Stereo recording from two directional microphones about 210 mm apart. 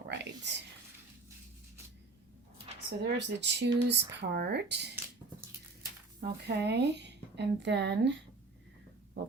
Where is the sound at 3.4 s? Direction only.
55° right (ahead or behind).